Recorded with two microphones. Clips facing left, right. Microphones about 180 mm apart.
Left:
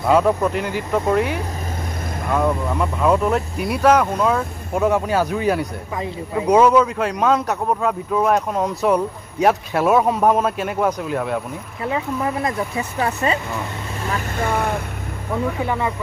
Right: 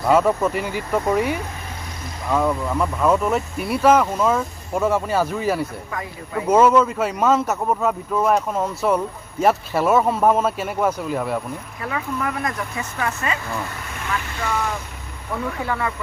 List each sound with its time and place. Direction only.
0.0 s speech: centre (ahead or behind)
2.3 s speech: centre (ahead or behind)
5.9 s speech: 15° left (ahead or behind)
6.5 s speech: 5° right (ahead or behind)
11.8 s speech: 25° left (ahead or behind)
14.0 s speech: 40° left (ahead or behind)
15.6 s speech: 20° left (ahead or behind)